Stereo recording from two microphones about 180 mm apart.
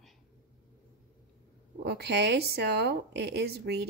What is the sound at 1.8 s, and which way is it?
Speech, 65° right (ahead or behind).